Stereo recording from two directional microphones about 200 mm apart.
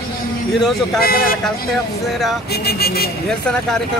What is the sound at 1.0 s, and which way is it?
Speech, 45° left (ahead or behind).